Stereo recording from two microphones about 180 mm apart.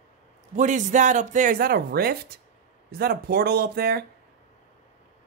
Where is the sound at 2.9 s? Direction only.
60° right (ahead or behind).